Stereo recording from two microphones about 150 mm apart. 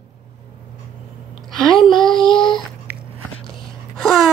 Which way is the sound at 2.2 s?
5° left (ahead or behind).